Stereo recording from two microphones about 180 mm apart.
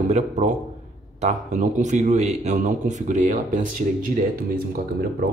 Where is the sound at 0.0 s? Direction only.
40° right (ahead or behind).